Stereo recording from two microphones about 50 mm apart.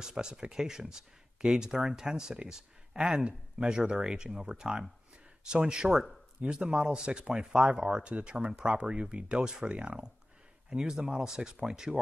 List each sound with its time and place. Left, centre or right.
0.0 s speech: centre